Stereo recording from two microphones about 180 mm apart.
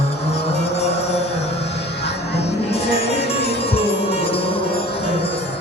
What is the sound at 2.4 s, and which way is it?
Music, 35° left (ahead or behind).